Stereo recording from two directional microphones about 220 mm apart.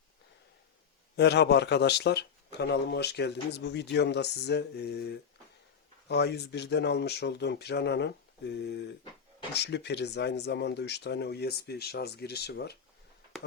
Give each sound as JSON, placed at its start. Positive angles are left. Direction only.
{"t": 1.1, "sound": "speech", "side_deg": 50}